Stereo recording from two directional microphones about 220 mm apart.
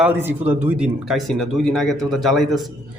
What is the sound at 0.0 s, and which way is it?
Speech, 10° right (ahead or behind).